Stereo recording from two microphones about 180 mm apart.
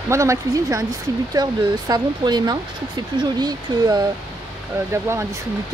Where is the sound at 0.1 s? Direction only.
15° right (ahead or behind).